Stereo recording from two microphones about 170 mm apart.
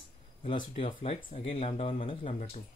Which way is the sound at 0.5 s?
30° left (ahead or behind).